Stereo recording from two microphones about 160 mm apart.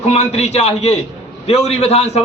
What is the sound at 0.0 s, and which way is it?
A man's voice, 40° left (ahead or behind).